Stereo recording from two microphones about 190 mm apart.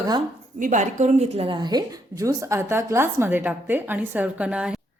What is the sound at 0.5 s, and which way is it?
A woman's voice, 45° right (ahead or behind).